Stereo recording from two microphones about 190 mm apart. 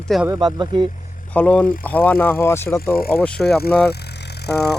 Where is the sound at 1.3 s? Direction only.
5° left (ahead or behind).